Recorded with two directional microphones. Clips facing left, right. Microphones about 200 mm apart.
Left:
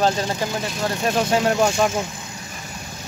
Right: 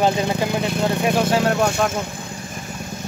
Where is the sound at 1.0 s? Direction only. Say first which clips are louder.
Even; 10° right (ahead or behind).